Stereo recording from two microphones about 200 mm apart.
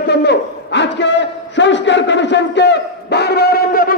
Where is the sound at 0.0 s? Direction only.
55° left (ahead or behind).